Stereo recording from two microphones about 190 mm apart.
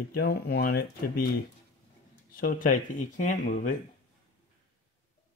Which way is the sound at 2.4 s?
45° left (ahead or behind).